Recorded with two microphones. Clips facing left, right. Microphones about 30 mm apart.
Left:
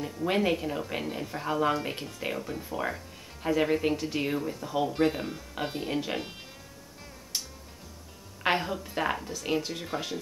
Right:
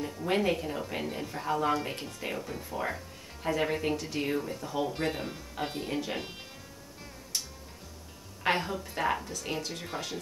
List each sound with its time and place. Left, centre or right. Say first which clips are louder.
0.2 s speech: left 2 dB; centre
8.5 s speech: left 2 dB; centre